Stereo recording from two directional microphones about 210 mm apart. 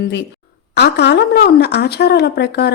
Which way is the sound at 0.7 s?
50° left (ahead or behind).